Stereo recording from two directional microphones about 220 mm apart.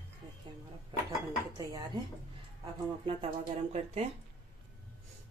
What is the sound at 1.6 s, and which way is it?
Speech, 15° right (ahead or behind).